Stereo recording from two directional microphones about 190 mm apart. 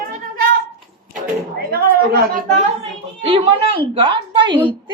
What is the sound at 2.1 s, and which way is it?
Speech, 50° right (ahead or behind).